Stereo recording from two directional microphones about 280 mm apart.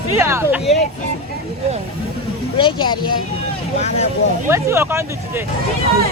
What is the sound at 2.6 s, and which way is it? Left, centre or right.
Speech, centre.